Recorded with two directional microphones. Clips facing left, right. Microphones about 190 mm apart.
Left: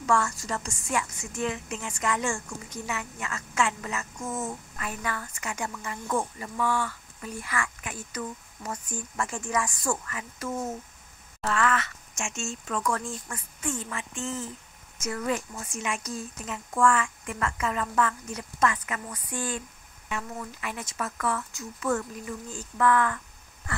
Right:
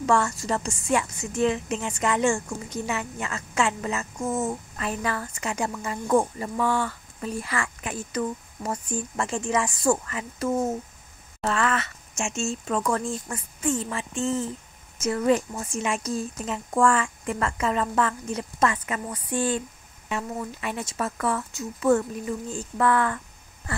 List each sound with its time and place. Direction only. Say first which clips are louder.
0.0 s a woman's voice: right 3 dB; 30° right (ahead or behind)
4.2 s a woman's voice: right 7 dB; 40° right (ahead or behind)
6.8 s a sound: right 4 dB; 40° right (ahead or behind)
7.2 s a woman's voice: right 4 dB; 30° right (ahead or behind)
10.5 s speech: right 7 dB; 55° right (ahead or behind)
11.4 s a woman's voice: right 1 dB; 25° right (ahead or behind)